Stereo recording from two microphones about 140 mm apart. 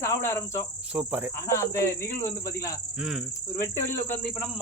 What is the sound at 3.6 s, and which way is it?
Speech, 20° left (ahead or behind).